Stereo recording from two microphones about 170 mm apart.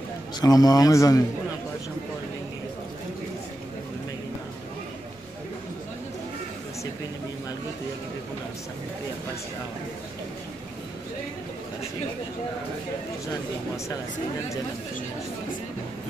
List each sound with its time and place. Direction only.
0.4 s a man's voice: 20° left (ahead or behind)